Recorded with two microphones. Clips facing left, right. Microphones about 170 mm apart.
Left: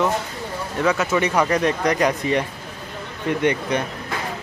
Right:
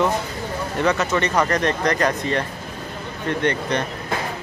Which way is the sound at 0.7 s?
5° left (ahead or behind).